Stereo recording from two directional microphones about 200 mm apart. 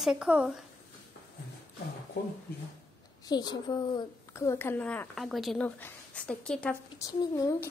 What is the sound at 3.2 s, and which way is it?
A woman's voice, 20° left (ahead or behind).